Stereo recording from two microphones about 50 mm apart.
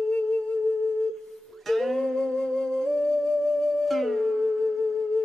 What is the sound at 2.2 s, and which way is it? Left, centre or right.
Music, centre.